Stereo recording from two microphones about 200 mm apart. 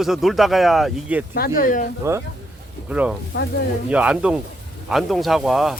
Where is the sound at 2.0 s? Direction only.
15° right (ahead or behind).